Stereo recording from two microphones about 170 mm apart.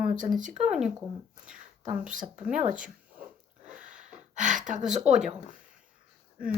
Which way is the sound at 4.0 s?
50° right (ahead or behind).